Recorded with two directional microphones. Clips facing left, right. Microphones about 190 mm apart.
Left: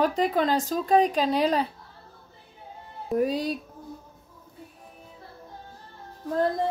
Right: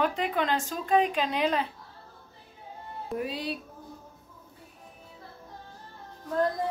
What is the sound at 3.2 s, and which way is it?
Speech, 40° left (ahead or behind).